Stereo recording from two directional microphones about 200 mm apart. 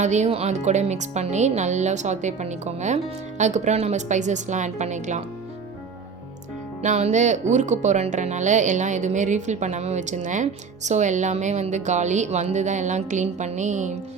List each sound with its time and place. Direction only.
0.0 s speech: 35° right (ahead or behind)
6.8 s speech: 35° right (ahead or behind)